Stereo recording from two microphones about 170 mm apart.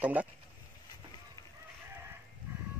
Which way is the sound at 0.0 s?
10° right (ahead or behind).